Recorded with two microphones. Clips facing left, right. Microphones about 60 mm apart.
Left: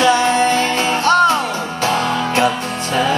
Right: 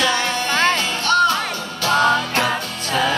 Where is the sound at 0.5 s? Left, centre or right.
Right.